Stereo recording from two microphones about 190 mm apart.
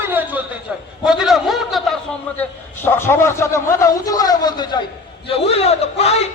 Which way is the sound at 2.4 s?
10° left (ahead or behind).